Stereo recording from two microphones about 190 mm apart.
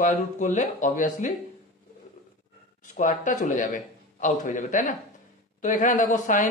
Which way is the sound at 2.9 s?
40° left (ahead or behind).